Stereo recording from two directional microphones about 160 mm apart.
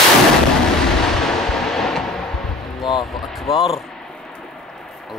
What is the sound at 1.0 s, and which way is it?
Artillery fire, 5° left (ahead or behind).